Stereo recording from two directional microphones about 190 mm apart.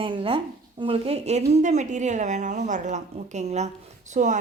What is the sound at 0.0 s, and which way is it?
A woman's voice, 25° right (ahead or behind).